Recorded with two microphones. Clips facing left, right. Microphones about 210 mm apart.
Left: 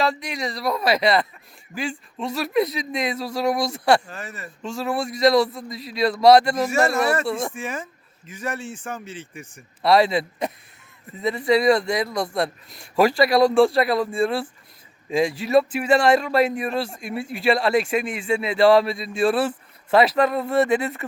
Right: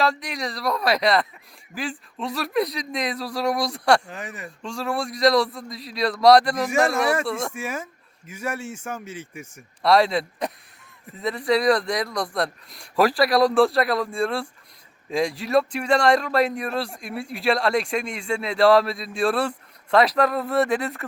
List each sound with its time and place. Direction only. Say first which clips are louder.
0.0 s a man's voice: left 1 dB; centre (ahead or behind)
4.1 s a man's voice: right 1 dB; 15° right (ahead or behind)
4.4 s a man's voice: left 2 dB; centre (ahead or behind)
9.8 s a man's voice: left 1 dB; centre (ahead or behind)